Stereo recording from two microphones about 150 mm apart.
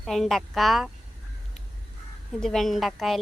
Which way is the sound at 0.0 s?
Centre (ahead or behind).